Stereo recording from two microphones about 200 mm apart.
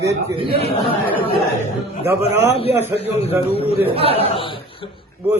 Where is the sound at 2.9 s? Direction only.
30° left (ahead or behind).